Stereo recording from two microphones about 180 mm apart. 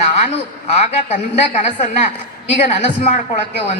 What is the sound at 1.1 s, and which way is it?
Speech, 40° left (ahead or behind).